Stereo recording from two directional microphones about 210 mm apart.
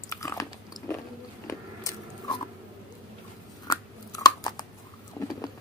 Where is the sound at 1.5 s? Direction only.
15° left (ahead or behind).